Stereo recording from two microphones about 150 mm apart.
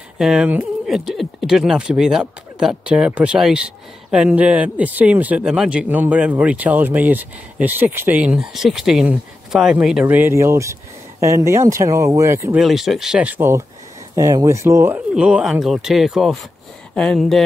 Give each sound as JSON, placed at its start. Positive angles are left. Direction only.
{"t": 0.2, "sound": "speech", "side_deg": -5}
{"t": 12.5, "sound": "speech", "side_deg": 0}
{"t": 15.1, "sound": "speech", "side_deg": -5}